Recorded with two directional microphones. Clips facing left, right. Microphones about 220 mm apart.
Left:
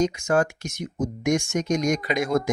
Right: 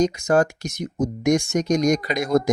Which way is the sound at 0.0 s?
40° right (ahead or behind).